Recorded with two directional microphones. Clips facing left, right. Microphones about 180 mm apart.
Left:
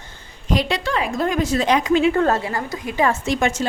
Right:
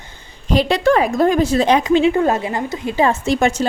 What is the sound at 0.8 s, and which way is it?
A woman's voice, 45° right (ahead or behind).